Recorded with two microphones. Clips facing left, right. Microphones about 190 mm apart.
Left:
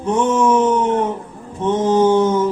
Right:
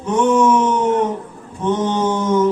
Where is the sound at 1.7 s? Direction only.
30° left (ahead or behind).